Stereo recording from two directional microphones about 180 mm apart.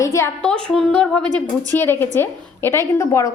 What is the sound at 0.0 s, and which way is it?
A woman's voice, 15° left (ahead or behind).